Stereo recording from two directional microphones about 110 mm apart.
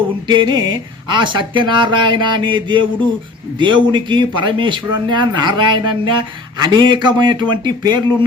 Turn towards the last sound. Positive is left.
turn(degrees=-40)  # may be behind; listen again after turning